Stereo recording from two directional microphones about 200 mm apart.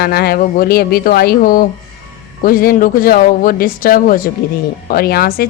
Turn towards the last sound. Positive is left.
turn(degrees=50)  # may be behind; listen again after turning